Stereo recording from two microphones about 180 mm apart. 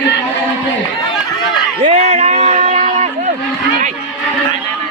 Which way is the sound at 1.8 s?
35° right (ahead or behind).